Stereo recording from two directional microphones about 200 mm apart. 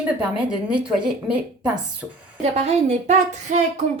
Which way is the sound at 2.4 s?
35° right (ahead or behind).